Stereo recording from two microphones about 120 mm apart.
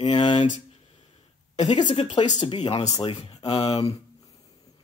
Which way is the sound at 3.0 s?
55° left (ahead or behind).